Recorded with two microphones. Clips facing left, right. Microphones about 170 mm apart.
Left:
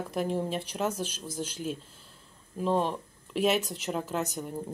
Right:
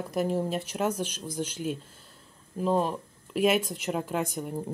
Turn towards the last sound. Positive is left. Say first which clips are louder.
# right 2 dB
turn(degrees=-5)  # may be behind; listen again after turning